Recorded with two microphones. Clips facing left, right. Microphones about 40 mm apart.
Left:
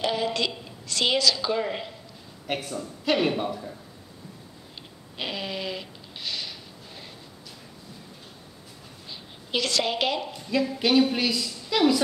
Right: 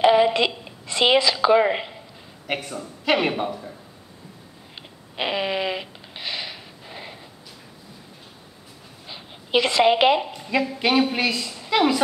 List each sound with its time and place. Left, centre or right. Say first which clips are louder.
0.0 s a woman's voice: right 9 dB; right
2.4 s speech: right 2 dB; centre
4.7 s a sound: right 6 dB; right
9.0 s a woman's voice: right 4 dB; right